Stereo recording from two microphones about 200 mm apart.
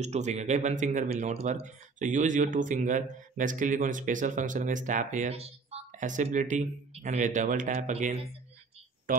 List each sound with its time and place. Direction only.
0.0 s speech: 35° right (ahead or behind)